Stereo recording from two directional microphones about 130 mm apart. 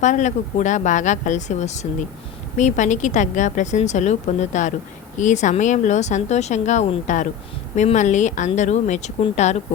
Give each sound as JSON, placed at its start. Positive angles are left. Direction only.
{"t": 0.0, "sound": "a woman's voice", "side_deg": 65}